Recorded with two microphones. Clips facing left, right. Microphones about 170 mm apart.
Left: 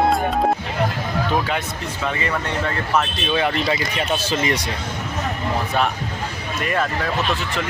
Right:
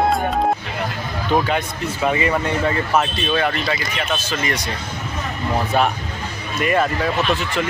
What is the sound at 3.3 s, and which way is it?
Speech, 20° left (ahead or behind).